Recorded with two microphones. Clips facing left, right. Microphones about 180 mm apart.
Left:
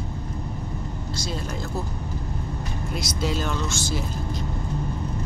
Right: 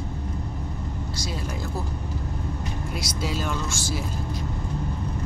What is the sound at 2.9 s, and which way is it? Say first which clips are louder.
Speech: left 4 dB; 10° right (ahead or behind).